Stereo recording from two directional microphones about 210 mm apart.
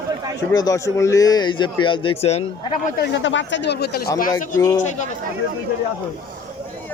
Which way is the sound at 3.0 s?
60° left (ahead or behind).